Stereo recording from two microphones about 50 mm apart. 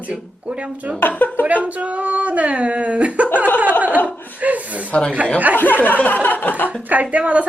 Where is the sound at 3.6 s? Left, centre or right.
Right.